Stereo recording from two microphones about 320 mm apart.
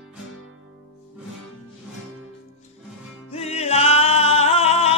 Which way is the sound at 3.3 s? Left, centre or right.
Centre.